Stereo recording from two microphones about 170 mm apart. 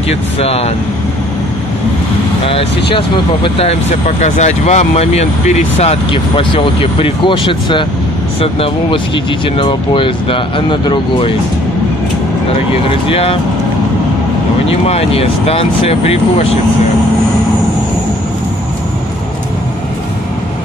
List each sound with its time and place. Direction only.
0.1 s speech: 35° left (ahead or behind)
2.4 s speech: 35° left (ahead or behind)
13.1 s speech: 35° left (ahead or behind)
14.7 s speech: 35° left (ahead or behind)